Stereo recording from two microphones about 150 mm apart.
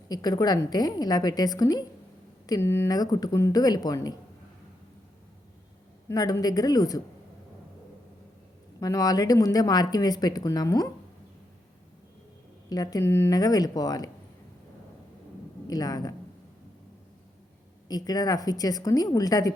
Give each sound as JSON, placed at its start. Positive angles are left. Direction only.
{"t": 0.1, "sound": "speech", "side_deg": 25}
{"t": 6.1, "sound": "speech", "side_deg": 20}
{"t": 8.8, "sound": "speech", "side_deg": 25}
{"t": 12.6, "sound": "speech", "side_deg": 25}
{"t": 15.6, "sound": "speech", "side_deg": 25}
{"t": 17.8, "sound": "speech", "side_deg": 25}